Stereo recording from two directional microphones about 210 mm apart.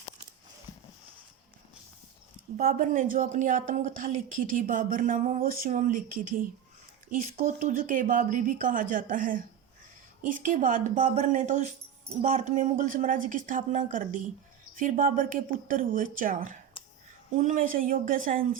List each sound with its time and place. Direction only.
2.6 s speech: 40° right (ahead or behind)
16.8 s a sound: 25° left (ahead or behind)
17.3 s speech: 40° right (ahead or behind)